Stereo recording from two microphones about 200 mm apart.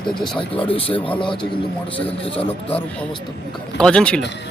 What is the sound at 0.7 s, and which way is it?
Speech, 25° left (ahead or behind).